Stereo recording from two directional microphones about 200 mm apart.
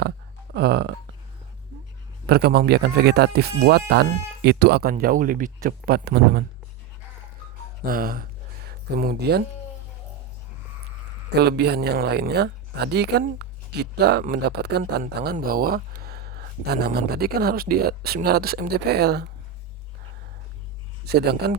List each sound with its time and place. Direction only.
0.5 s burping: 55° right (ahead or behind)
2.2 s speech: 55° right (ahead or behind)
7.9 s speech: 45° right (ahead or behind)
11.3 s speech: 55° right (ahead or behind)
21.1 s speech: 55° right (ahead or behind)